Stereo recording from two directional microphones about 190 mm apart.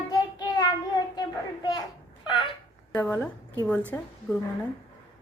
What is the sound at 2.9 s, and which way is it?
A woman's voice, 10° left (ahead or behind).